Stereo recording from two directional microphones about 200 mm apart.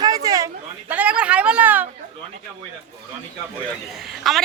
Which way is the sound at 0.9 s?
5° right (ahead or behind).